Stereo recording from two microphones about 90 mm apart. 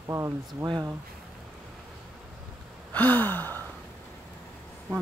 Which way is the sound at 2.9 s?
20° left (ahead or behind).